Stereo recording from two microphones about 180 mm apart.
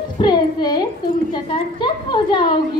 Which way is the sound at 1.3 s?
25° left (ahead or behind).